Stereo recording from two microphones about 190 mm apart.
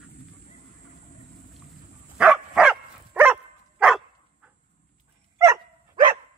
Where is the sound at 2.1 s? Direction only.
5° right (ahead or behind).